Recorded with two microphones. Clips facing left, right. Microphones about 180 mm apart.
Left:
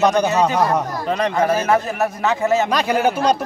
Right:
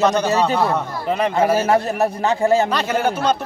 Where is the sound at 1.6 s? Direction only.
35° right (ahead or behind).